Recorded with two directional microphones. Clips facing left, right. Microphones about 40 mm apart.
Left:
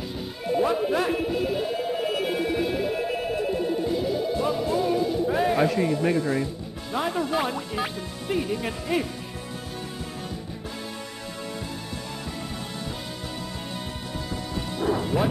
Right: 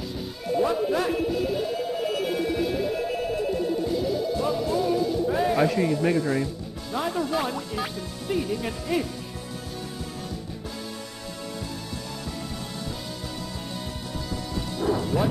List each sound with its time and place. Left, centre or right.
0.5 s music: left
5.6 s a man's voice: centre
6.9 s speech: left
14.5 s music: left